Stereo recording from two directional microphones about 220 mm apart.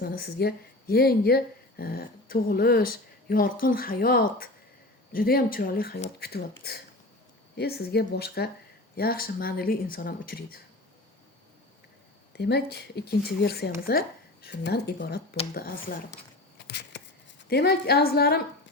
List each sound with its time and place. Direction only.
0.0 s speech: 45° left (ahead or behind)
12.4 s speech: 50° left (ahead or behind)
16.6 s a sound: 50° left (ahead or behind)
17.5 s speech: 45° left (ahead or behind)